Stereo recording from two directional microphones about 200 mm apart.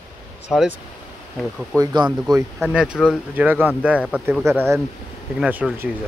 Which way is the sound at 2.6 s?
5° right (ahead or behind).